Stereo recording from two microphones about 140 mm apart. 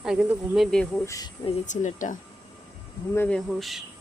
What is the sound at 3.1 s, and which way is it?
Speech, 15° left (ahead or behind).